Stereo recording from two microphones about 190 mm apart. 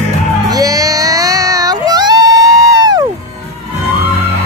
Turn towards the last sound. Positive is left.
turn(degrees=-20)  # may be behind; listen again after turning